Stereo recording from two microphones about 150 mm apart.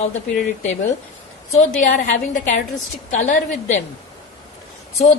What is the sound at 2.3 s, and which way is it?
A woman's voice, 60° left (ahead or behind).